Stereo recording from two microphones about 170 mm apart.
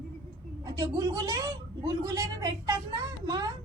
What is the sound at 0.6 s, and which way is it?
A woman's voice, 20° right (ahead or behind).